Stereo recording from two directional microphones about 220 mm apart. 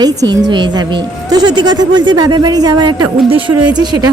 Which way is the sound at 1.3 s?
20° right (ahead or behind).